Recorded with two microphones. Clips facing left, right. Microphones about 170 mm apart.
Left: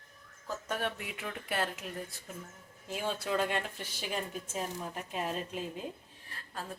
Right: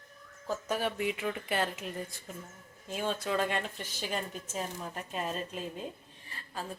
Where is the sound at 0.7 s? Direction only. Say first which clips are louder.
Right 5 dB; 5° right (ahead or behind).